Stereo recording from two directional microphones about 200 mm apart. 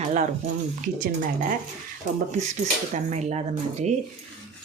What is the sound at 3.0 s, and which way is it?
Speech, 35° right (ahead or behind).